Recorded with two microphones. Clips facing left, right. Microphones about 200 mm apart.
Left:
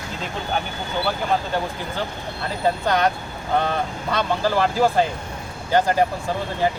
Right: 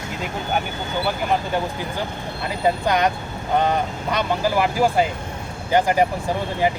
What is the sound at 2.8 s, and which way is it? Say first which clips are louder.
Speech: even; 15° right (ahead or behind).